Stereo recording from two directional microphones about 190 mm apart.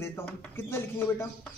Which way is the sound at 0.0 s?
10° left (ahead or behind).